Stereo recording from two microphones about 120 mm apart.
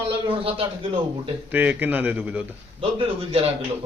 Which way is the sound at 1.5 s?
15° right (ahead or behind).